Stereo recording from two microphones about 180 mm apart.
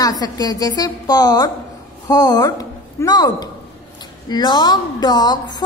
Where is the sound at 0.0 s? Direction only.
20° left (ahead or behind).